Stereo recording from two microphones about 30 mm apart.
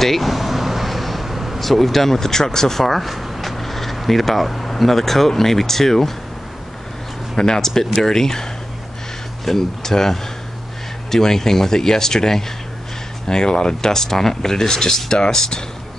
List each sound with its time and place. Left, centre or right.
0.0 s vehicle: centre
1.6 s speech: centre
2.8 s speech: centre
7.3 s speech: left